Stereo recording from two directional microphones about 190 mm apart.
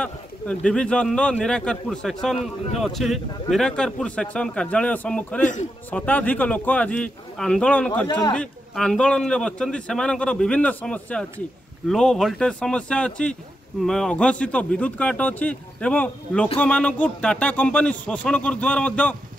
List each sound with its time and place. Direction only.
0.0 s a man's voice: 5° left (ahead or behind)
5.4 s a man's voice: 40° left (ahead or behind)
5.9 s a man's voice: 10° left (ahead or behind)